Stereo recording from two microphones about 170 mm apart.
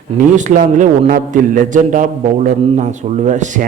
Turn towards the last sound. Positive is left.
turn(degrees=-45)  # may be behind; listen again after turning